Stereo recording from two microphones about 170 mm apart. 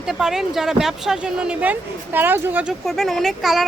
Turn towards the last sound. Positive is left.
turn(degrees=0)  # may be behind; listen again after turning